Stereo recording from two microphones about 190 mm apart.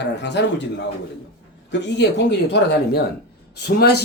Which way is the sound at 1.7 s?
65° left (ahead or behind).